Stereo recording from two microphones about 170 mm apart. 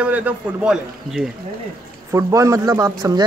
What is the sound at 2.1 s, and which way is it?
Speech, 20° right (ahead or behind).